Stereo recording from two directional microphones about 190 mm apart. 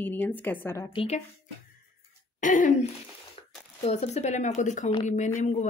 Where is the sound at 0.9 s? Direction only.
35° left (ahead or behind).